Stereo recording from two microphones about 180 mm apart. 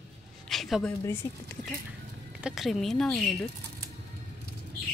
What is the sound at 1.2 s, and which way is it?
Speech, 15° left (ahead or behind).